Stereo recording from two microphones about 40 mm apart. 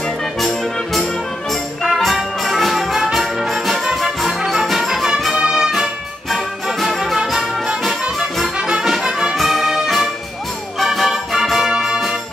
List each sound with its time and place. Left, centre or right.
0.4 s music: centre
6.3 s music: centre
9.4 s music: centre